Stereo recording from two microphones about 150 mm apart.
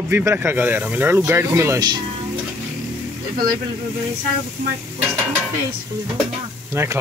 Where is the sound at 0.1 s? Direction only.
15° right (ahead or behind).